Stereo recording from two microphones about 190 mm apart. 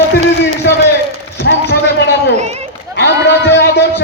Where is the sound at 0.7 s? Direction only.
70° left (ahead or behind).